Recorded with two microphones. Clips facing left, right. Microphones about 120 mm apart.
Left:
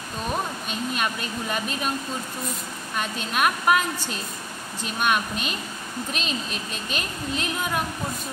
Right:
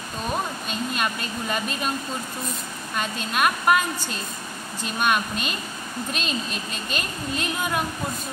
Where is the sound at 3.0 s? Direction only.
Centre (ahead or behind).